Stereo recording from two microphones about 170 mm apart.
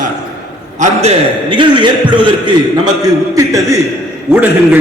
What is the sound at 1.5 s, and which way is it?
A man's voice, 30° right (ahead or behind).